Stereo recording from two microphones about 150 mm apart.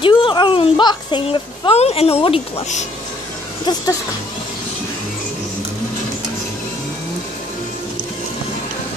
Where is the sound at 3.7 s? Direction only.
30° left (ahead or behind).